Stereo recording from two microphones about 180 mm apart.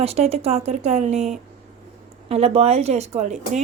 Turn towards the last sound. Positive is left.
turn(degrees=-40)  # may be behind; listen again after turning